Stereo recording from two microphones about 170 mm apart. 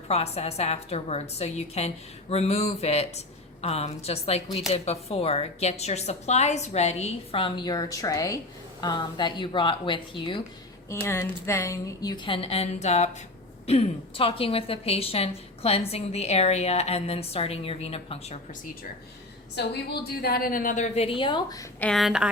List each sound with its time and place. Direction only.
0.1 s a woman's voice: 40° left (ahead or behind)
11.0 s a woman's voice: 15° left (ahead or behind); by 18.3 s 35° left (ahead or behind)
19.5 s a woman's voice: 70° left (ahead or behind); by 21.7 s 25° left (ahead or behind)
21.8 s a woman's voice: 5° left (ahead or behind)